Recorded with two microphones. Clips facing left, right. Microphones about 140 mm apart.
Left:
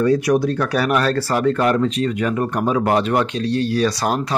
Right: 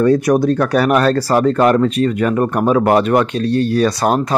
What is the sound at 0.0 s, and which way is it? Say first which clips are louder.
Speech: right 4 dB; 50° right (ahead or behind).